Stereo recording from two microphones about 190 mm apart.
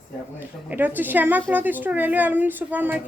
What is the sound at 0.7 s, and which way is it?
A woman's voice, 10° right (ahead or behind).